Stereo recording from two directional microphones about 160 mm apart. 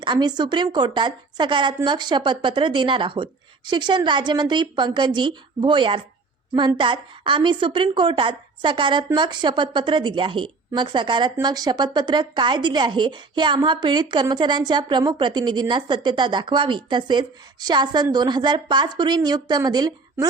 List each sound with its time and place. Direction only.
0.0 s a woman's voice: 25° right (ahead or behind)